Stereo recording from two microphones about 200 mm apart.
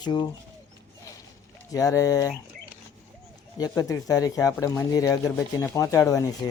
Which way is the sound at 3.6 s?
15° left (ahead or behind).